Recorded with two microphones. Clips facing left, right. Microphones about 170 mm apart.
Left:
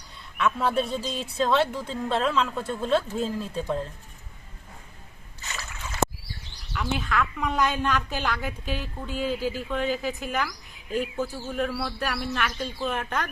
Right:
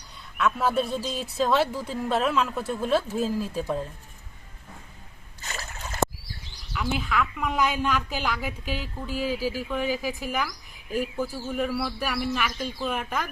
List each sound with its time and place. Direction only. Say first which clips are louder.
0.3 s speech: even; centre (ahead or behind)
5.4 s a sound: right 1 dB; 40° right (ahead or behind)
6.7 s a woman's voice: even; 5° right (ahead or behind)